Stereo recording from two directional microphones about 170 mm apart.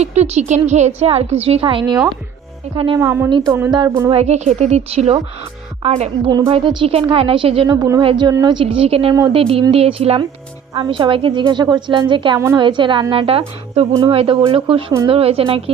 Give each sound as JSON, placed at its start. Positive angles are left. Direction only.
{"t": 0.0, "sound": "a woman's voice", "side_deg": -40}
{"t": 3.0, "sound": "speech", "side_deg": -15}
{"t": 3.2, "sound": "a woman's voice", "side_deg": -25}
{"t": 4.1, "sound": "a woman's voice", "side_deg": -40}
{"t": 12.4, "sound": "speech", "side_deg": -15}
{"t": 12.6, "sound": "a woman's voice", "side_deg": -30}